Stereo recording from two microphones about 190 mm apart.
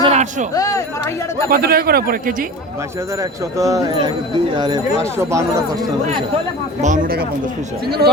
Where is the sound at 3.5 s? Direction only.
15° right (ahead or behind).